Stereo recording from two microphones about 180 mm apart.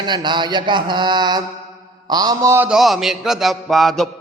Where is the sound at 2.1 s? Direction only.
20° right (ahead or behind); by 4.0 s centre (ahead or behind).